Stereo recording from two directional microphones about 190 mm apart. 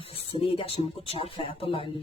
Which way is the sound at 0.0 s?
30° left (ahead or behind).